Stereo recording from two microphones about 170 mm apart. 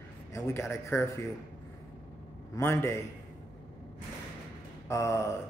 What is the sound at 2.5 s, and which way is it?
Speech, 15° left (ahead or behind).